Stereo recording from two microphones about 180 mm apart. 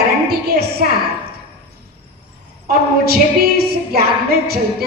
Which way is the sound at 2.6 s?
60° right (ahead or behind).